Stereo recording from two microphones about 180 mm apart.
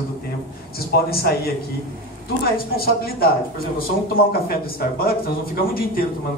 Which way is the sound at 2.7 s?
55° left (ahead or behind).